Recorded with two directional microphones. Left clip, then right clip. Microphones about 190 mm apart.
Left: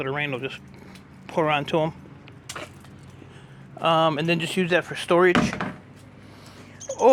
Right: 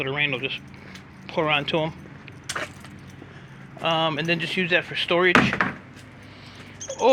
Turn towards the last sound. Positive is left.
turn(degrees=30)  # may be behind; listen again after turning